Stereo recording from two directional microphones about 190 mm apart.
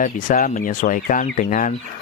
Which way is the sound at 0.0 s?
45° left (ahead or behind).